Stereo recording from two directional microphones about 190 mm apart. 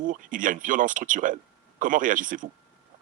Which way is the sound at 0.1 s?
45° right (ahead or behind).